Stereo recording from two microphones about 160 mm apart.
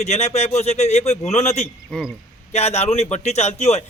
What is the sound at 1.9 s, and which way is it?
Speech, centre (ahead or behind).